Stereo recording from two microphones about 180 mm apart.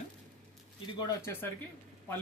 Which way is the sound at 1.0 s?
20° left (ahead or behind).